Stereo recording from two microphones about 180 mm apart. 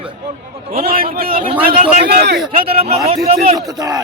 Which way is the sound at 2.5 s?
30° right (ahead or behind).